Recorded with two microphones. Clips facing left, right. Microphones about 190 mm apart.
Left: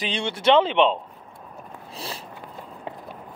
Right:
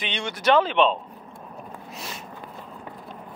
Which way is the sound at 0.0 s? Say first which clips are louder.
Left 3 dB; 30° left (ahead or behind).